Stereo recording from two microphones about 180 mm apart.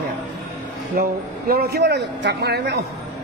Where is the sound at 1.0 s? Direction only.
55° right (ahead or behind).